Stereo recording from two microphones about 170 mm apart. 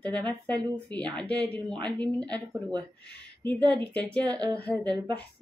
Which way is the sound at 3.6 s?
25° right (ahead or behind).